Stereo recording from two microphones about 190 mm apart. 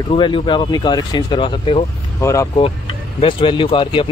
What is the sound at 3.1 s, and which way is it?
Speech, 25° left (ahead or behind).